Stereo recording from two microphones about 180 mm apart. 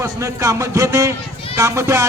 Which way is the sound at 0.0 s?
15° right (ahead or behind).